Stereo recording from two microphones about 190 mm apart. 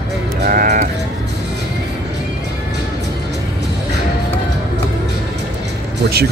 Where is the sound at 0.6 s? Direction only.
40° right (ahead or behind).